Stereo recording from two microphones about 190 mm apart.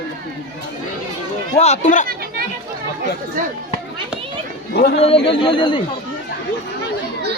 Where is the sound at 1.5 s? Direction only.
35° left (ahead or behind).